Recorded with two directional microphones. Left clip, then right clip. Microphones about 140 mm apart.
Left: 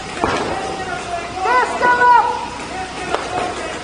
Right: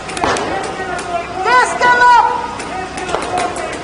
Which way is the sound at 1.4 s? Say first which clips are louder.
Right 4 dB; centre (ahead or behind).